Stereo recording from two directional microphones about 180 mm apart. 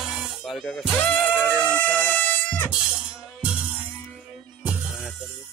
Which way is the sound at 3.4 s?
5° right (ahead or behind).